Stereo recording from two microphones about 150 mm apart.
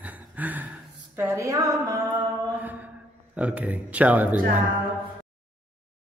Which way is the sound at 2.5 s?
10° right (ahead or behind).